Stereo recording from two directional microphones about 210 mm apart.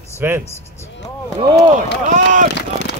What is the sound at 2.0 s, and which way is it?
Speech, 35° right (ahead or behind).